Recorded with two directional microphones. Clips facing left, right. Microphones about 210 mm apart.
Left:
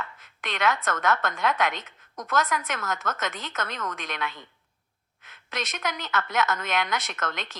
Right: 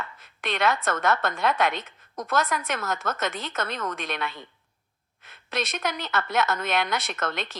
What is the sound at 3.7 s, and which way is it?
Speech, 30° right (ahead or behind).